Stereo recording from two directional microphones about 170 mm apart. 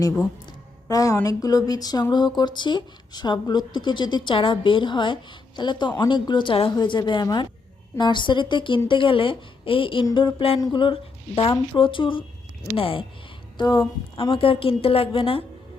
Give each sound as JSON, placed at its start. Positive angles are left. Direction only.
{"t": 0.9, "sound": "a woman's voice", "side_deg": 20}